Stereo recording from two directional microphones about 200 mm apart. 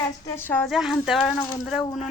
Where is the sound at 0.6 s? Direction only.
Centre (ahead or behind).